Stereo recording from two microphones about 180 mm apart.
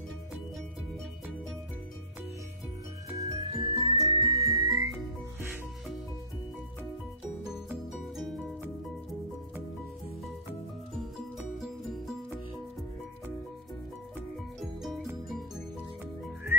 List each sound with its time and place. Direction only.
3.2 s music: 20° right (ahead or behind)
7.4 s music: centre (ahead or behind)
11.0 s music: centre (ahead or behind)
14.6 s music: centre (ahead or behind)